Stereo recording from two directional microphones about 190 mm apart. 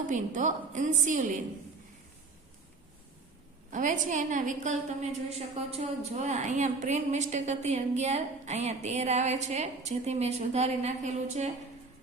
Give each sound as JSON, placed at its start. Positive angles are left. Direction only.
{"t": 0.1, "sound": "a woman's voice", "side_deg": -40}
{"t": 3.7, "sound": "a woman's voice", "side_deg": -40}